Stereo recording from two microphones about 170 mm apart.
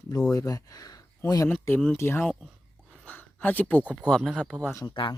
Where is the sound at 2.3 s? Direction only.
Centre (ahead or behind).